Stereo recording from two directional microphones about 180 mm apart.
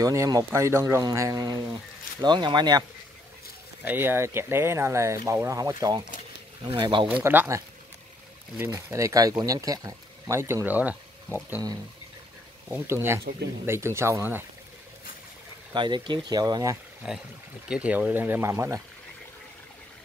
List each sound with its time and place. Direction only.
0.0 s speech: 20° right (ahead or behind)
3.8 s speech: 10° right (ahead or behind)
7.2 s speech: 15° right (ahead or behind)
15.7 s speech: 25° right (ahead or behind)
17.0 s speech: 5° right (ahead or behind)